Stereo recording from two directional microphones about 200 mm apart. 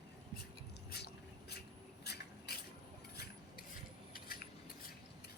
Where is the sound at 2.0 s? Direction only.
55° left (ahead or behind).